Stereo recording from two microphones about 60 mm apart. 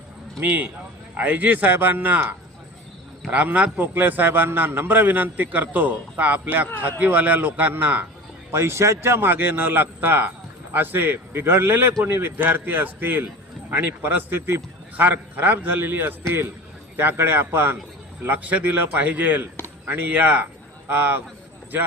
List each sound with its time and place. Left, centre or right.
0.4 s speech: right
3.2 s a man's voice: right
8.5 s a man's voice: right
15.0 s a man's voice: right
18.2 s speech: right